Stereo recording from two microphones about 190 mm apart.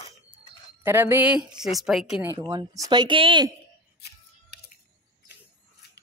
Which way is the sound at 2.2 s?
15° right (ahead or behind).